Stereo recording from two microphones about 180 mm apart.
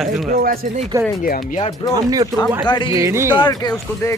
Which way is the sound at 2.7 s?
25° left (ahead or behind).